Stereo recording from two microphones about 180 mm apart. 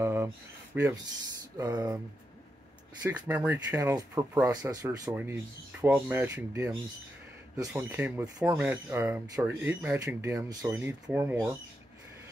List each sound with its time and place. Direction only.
0.0 s a sound: 15° right (ahead or behind)
0.7 s speech: 10° right (ahead or behind)
1.6 s speech: 20° right (ahead or behind)
3.0 s speech: 10° right (ahead or behind)